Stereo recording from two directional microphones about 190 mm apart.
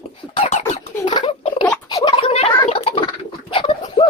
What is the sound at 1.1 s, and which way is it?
Pig, 25° left (ahead or behind).